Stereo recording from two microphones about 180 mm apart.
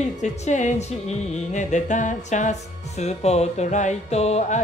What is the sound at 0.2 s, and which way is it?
Music, 40° left (ahead or behind).